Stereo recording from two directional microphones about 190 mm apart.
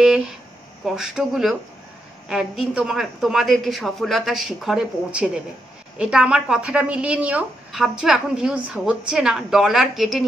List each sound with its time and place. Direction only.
0.0 s a woman's voice: 5° right (ahead or behind)